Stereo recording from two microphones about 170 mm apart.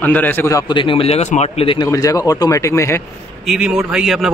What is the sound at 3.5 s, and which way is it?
Speech, 5° right (ahead or behind).